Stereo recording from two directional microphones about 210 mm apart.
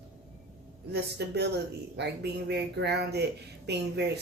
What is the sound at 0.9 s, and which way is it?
Speech, 50° right (ahead or behind).